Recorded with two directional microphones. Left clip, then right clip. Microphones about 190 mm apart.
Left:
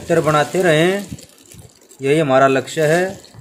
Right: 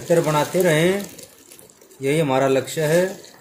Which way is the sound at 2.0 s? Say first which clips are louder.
Left 6 dB; 55° left (ahead or behind).